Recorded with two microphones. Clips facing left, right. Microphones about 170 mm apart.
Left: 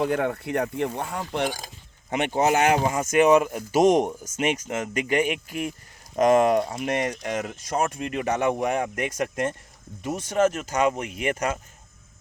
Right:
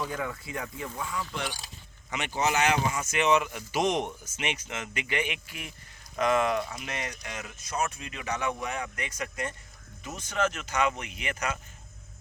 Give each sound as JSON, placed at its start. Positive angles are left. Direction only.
{"t": 0.0, "sound": "speech", "side_deg": 65}